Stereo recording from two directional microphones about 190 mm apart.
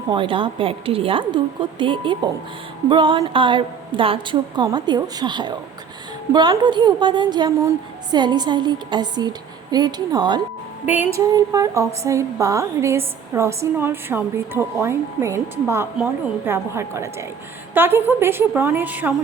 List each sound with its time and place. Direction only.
0.1 s speech: 25° right (ahead or behind)
10.8 s a woman's voice: 10° right (ahead or behind)